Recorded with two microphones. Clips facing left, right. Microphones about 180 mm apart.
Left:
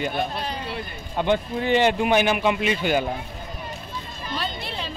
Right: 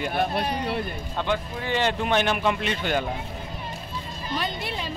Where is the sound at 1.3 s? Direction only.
20° left (ahead or behind).